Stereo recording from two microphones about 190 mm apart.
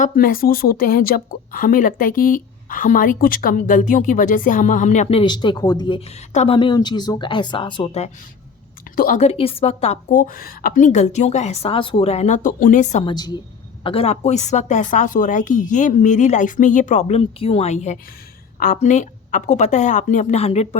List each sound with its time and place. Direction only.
0.0 s a woman's voice: 50° left (ahead or behind); by 6.0 s 20° left (ahead or behind)
6.1 s a woman's voice: 35° left (ahead or behind)
9.0 s a woman's voice: 45° left (ahead or behind)
13.1 s a woman's voice: 20° left (ahead or behind)